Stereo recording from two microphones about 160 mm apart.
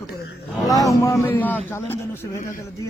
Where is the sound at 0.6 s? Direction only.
20° left (ahead or behind).